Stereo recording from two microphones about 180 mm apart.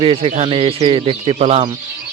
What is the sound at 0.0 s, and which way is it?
Speech, 30° right (ahead or behind).